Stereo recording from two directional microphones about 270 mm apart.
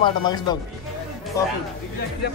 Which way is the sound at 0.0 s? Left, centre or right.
Centre.